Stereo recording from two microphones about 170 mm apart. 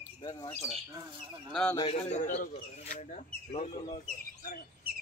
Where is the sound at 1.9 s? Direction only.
40° left (ahead or behind).